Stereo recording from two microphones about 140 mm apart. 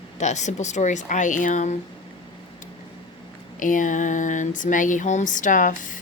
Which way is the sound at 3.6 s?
70° left (ahead or behind).